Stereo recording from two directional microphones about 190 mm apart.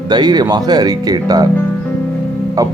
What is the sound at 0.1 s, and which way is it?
Speech, 20° right (ahead or behind).